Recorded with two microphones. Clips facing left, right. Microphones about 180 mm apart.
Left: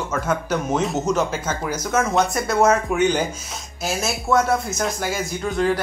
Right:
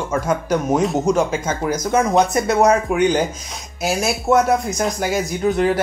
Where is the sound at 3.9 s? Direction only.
15° right (ahead or behind).